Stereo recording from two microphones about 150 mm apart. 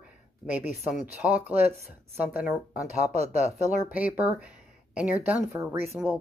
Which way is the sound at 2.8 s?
45° right (ahead or behind).